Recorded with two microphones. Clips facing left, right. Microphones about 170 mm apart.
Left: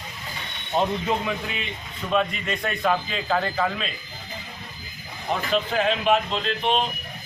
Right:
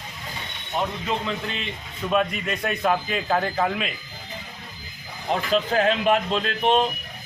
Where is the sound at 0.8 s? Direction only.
20° left (ahead or behind).